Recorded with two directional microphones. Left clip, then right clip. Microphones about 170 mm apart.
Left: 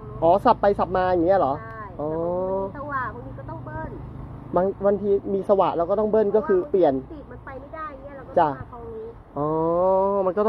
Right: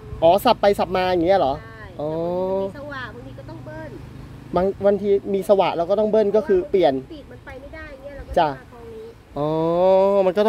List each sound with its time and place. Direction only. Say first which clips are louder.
0.2 s speech: right 2 dB; 45° right (ahead or behind)
4.6 s speech: right 2 dB; 45° right (ahead or behind)
9.3 s speech: right 2 dB; 55° right (ahead or behind)